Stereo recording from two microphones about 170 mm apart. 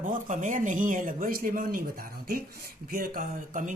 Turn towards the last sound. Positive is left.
turn(degrees=-50)  # may be behind; listen again after turning